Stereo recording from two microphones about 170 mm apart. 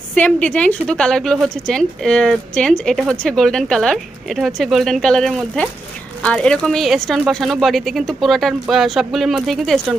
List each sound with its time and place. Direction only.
0.1 s a woman's voice: 5° left (ahead or behind)